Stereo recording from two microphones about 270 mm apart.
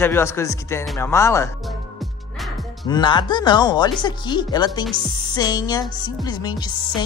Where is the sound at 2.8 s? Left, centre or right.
Centre.